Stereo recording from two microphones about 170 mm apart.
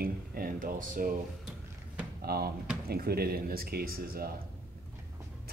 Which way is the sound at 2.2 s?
65° right (ahead or behind).